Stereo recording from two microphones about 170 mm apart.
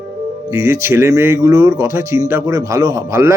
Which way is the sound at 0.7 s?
15° right (ahead or behind).